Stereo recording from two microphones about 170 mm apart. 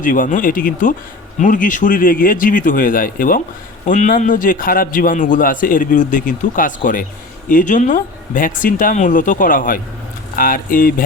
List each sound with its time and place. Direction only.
0.0 s a man's voice: 50° left (ahead or behind)